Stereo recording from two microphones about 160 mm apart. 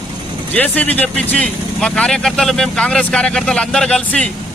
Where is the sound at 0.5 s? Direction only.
10° left (ahead or behind).